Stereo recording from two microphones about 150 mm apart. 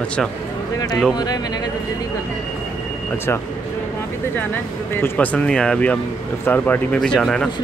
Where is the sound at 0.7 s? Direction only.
25° left (ahead or behind).